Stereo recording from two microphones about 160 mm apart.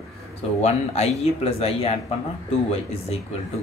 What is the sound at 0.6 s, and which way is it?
Speech, 40° left (ahead or behind).